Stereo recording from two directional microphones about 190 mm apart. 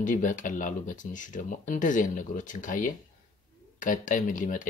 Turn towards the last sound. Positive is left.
turn(degrees=45)  # may be behind; listen again after turning